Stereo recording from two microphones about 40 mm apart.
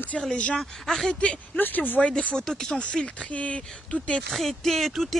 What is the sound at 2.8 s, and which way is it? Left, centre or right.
Speech, left.